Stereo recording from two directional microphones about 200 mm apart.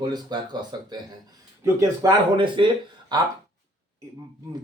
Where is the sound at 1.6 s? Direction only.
20° right (ahead or behind).